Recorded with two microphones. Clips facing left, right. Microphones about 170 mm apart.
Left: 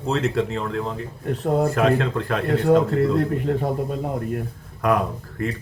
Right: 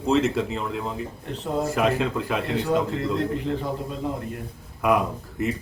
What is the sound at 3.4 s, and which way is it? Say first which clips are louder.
Speech: left 4 dB; 50° left (ahead or behind).